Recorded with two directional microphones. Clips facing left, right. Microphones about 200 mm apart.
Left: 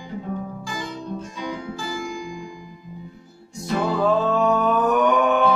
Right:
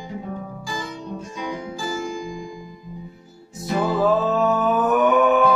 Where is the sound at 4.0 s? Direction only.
5° right (ahead or behind).